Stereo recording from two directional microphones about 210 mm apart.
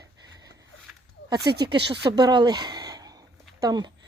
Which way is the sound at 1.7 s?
50° right (ahead or behind).